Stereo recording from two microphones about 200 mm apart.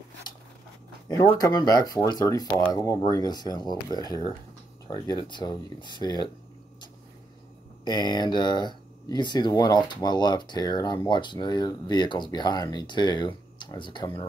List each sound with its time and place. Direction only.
1.0 s speech: 20° left (ahead or behind)
7.8 s speech: 20° left (ahead or behind)